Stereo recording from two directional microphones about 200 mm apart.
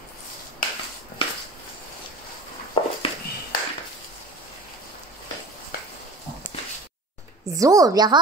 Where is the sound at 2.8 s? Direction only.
20° left (ahead or behind).